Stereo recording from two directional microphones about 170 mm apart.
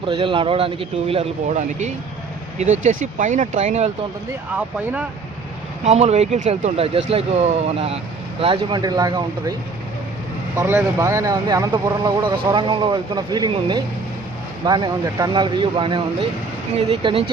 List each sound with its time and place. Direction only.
0.0 s speech: 30° right (ahead or behind)
4.5 s speech: 5° right (ahead or behind)
5.8 s speech: 40° right (ahead or behind); by 9.6 s 25° right (ahead or behind)
10.5 s speech: 15° right (ahead or behind); by 17.2 s 30° right (ahead or behind)